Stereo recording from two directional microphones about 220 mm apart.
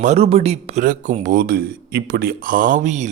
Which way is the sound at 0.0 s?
30° right (ahead or behind).